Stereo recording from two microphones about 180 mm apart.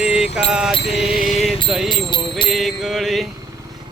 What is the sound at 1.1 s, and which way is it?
Music, 40° left (ahead or behind).